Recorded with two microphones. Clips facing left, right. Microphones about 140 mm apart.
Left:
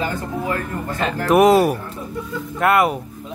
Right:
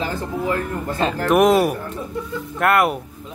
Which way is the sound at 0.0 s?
30° right (ahead or behind).